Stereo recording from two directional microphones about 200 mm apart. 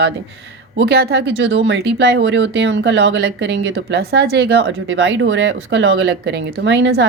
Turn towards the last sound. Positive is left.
turn(degrees=-60)  # may be behind; listen again after turning